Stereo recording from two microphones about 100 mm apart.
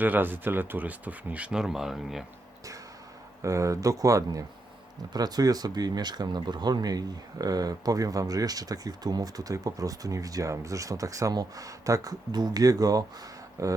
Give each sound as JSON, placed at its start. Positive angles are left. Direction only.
{"t": 0.0, "sound": "speech", "side_deg": -20}
{"t": 3.4, "sound": "speech", "side_deg": -30}